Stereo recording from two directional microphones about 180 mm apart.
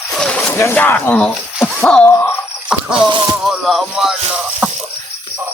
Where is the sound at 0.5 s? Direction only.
10° left (ahead or behind).